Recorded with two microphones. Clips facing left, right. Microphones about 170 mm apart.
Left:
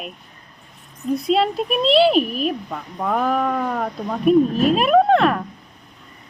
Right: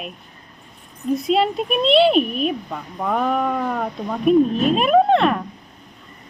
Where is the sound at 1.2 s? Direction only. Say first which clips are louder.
Left 1 dB; centre (ahead or behind).